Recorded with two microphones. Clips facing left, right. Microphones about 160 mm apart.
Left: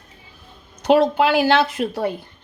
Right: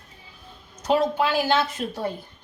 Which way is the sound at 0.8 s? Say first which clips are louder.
Left 6 dB; 75° left (ahead or behind).